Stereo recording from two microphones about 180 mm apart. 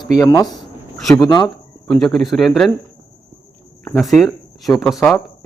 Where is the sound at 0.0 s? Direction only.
20° left (ahead or behind).